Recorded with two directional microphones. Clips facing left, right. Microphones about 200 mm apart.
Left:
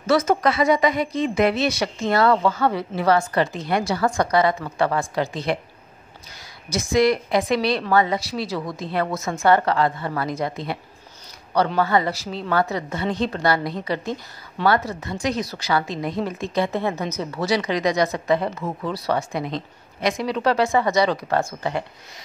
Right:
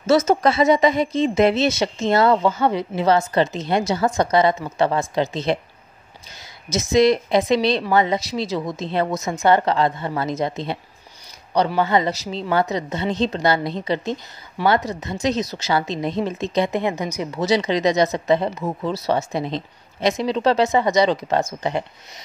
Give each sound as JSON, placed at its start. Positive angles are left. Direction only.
{"t": 0.0, "sound": "a woman's voice", "side_deg": -25}
{"t": 6.7, "sound": "a woman's voice", "side_deg": -20}